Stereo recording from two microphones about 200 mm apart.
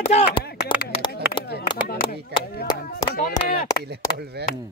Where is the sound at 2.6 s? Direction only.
15° left (ahead or behind).